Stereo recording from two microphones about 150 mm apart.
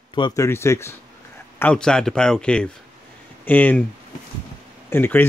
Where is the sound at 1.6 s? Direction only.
5° left (ahead or behind).